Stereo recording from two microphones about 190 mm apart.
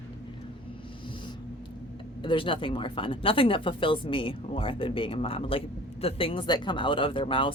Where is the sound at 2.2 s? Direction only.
25° left (ahead or behind).